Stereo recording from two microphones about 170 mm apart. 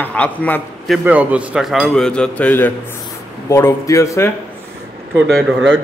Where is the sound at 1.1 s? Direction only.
10° right (ahead or behind); by 4.3 s 15° left (ahead or behind).